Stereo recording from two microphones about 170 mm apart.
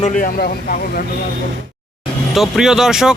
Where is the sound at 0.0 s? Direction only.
50° left (ahead or behind).